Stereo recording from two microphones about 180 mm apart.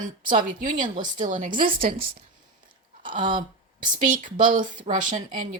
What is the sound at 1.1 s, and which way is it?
Speech, 45° right (ahead or behind).